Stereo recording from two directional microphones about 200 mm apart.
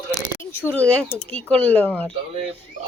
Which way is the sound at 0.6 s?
10° left (ahead or behind).